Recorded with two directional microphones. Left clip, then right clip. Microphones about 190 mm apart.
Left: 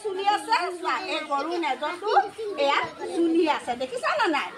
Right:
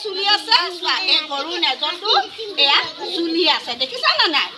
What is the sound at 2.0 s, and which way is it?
Speech, 15° left (ahead or behind).